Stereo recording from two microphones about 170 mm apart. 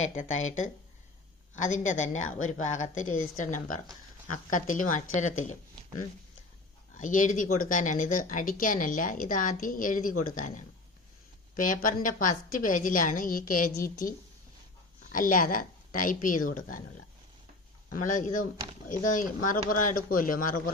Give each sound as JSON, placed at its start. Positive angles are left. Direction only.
{"t": 0.1, "sound": "a woman's voice", "side_deg": 45}
{"t": 7.0, "sound": "a woman's voice", "side_deg": 50}
{"t": 15.1, "sound": "a woman's voice", "side_deg": 55}
{"t": 17.9, "sound": "a woman's voice", "side_deg": 50}